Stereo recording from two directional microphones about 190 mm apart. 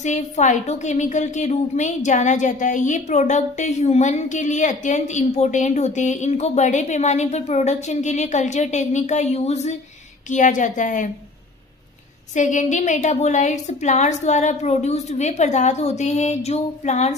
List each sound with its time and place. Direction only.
0.0 s a woman's voice: 40° left (ahead or behind)
12.3 s a woman's voice: 40° left (ahead or behind)